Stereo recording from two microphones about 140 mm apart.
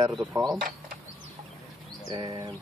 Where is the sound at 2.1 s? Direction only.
30° right (ahead or behind).